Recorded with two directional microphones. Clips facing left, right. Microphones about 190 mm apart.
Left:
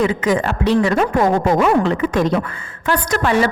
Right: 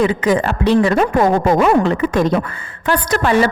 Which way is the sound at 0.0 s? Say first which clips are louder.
Right 2 dB; 35° right (ahead or behind).